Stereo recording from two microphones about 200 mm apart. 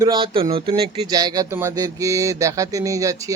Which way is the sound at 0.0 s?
25° right (ahead or behind).